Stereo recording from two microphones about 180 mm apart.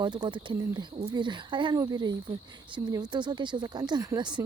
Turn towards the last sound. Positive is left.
turn(degrees=-25)  # may be behind; listen again after turning